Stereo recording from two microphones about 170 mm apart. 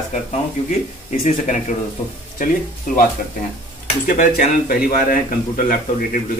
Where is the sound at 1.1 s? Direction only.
45° left (ahead or behind).